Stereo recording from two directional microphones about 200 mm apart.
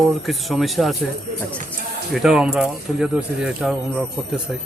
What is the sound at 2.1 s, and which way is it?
Speech, 5° right (ahead or behind).